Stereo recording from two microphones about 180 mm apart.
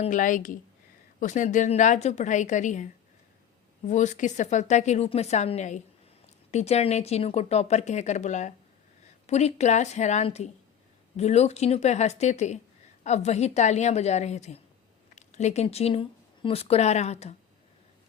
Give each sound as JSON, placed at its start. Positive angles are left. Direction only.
{"t": 0.0, "sound": "a woman's voice", "side_deg": 45}